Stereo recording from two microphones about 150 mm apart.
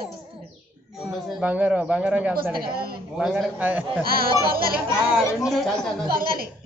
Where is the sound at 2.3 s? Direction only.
80° right.